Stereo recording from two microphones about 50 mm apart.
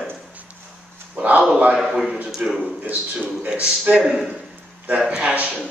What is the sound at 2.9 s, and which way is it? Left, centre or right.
A man's voice, right.